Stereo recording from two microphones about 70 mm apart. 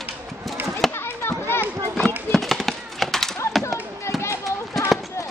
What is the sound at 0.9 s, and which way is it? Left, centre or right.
Children playing, left.